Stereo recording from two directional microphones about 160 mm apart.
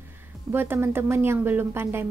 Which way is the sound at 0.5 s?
15° right (ahead or behind).